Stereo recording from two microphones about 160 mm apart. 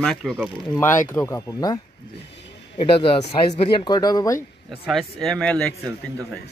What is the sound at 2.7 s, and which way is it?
Speech, 35° left (ahead or behind).